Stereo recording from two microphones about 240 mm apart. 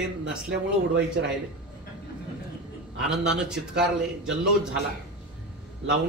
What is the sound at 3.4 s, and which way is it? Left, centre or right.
Speech, centre.